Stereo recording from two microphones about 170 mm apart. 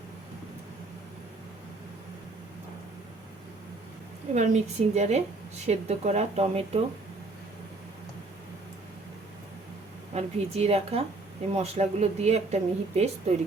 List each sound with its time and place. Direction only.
4.4 s speech: 40° right (ahead or behind)
10.2 s speech: 35° right (ahead or behind)